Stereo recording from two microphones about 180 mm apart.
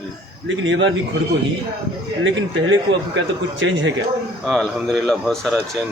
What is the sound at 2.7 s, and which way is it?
A man's voice, 90° right.